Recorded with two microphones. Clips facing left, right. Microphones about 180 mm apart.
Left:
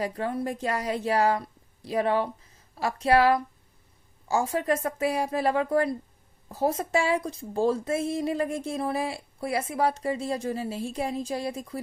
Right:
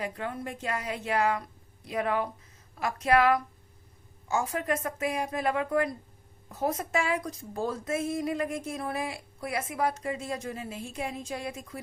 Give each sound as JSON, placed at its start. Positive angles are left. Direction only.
{"t": 0.0, "sound": "speech", "side_deg": 35}